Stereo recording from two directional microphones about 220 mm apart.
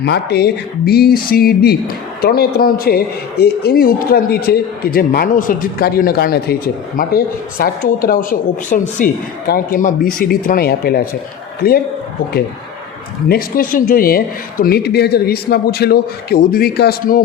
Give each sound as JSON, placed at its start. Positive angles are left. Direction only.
{"t": 0.0, "sound": "speech", "side_deg": 50}
{"t": 13.2, "sound": "speech", "side_deg": 40}